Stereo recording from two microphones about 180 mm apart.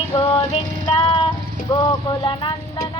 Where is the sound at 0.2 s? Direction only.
30° left (ahead or behind).